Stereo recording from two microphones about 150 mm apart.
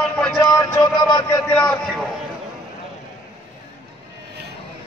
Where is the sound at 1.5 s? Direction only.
10° left (ahead or behind).